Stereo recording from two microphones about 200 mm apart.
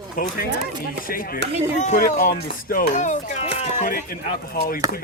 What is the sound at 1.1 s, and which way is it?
Speech, 45° left (ahead or behind).